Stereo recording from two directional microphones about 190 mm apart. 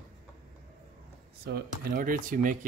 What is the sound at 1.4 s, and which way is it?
Speech, 50° right (ahead or behind).